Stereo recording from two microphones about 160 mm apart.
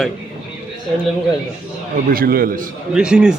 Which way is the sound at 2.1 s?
65° right (ahead or behind).